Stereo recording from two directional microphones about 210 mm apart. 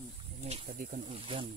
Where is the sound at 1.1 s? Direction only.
25° right (ahead or behind).